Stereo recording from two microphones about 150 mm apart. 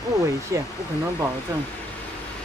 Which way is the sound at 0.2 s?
20° right (ahead or behind).